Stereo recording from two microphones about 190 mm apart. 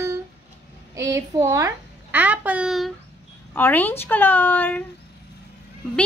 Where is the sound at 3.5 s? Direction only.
10° left (ahead or behind).